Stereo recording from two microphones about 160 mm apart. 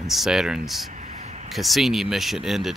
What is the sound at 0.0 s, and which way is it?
Speech, centre (ahead or behind).